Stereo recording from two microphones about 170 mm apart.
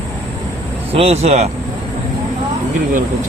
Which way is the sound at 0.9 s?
35° right (ahead or behind).